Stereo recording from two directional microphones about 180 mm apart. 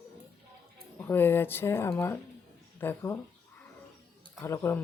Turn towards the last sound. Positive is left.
turn(degrees=15)  # may be behind; listen again after turning